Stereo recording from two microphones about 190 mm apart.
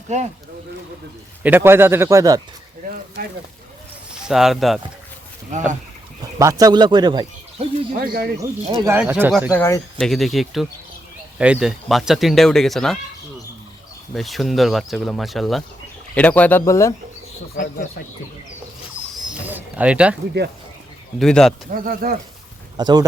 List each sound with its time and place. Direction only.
0.1 s speech: 40° right (ahead or behind)
1.5 s speech: 10° right (ahead or behind)
4.1 s speech: centre (ahead or behind)
5.5 s speech: 40° right (ahead or behind)
6.2 s speech: 15° right (ahead or behind)
7.9 s speech: 50° right (ahead or behind)
8.8 s speech: 10° right (ahead or behind)
9.3 s speech: centre (ahead or behind)
14.1 s speech: centre (ahead or behind)
19.1 s a sound: 5° right (ahead or behind)
21.2 s speech: 5° left (ahead or behind)
21.7 s speech: 50° right (ahead or behind)
22.8 s speech: 20° right (ahead or behind)